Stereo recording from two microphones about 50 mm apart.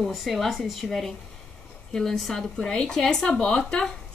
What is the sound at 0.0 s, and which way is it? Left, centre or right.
Speech, centre.